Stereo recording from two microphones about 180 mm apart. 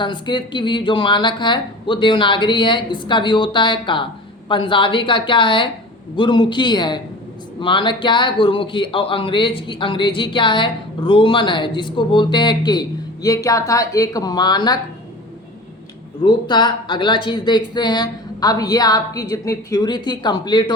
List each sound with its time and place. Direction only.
0.0 s a man's voice: 25° left (ahead or behind)
16.2 s a man's voice: 25° left (ahead or behind)